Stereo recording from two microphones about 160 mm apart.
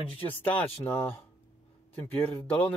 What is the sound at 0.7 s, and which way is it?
Speech, 35° left (ahead or behind).